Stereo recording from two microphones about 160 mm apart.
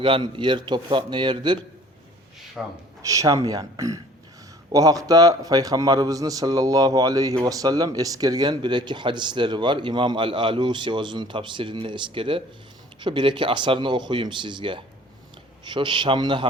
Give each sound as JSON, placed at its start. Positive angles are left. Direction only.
{"t": 0.0, "sound": "a man's voice", "side_deg": -30}
{"t": 2.6, "sound": "a man's voice", "side_deg": -5}
{"t": 3.0, "sound": "a man's voice", "side_deg": -20}